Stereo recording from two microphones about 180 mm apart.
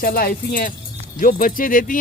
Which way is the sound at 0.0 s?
55° left (ahead or behind).